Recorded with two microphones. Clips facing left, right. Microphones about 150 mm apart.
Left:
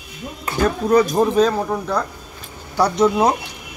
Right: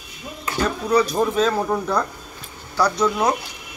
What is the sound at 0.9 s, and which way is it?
Speech, 45° left (ahead or behind).